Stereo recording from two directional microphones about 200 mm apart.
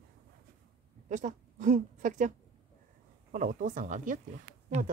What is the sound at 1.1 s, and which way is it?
A woman's voice, 40° right (ahead or behind).